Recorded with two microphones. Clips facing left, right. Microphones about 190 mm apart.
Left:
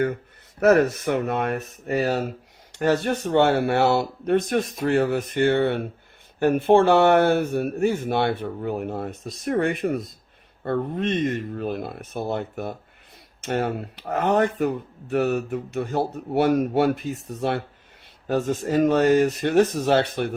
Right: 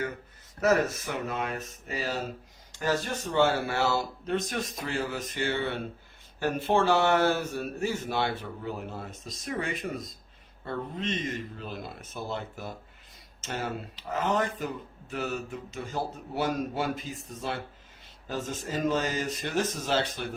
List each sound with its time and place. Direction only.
0.6 s speech: 65° left (ahead or behind)